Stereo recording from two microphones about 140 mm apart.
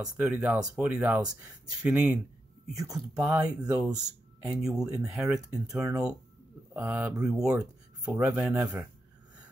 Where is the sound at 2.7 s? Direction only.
25° right (ahead or behind).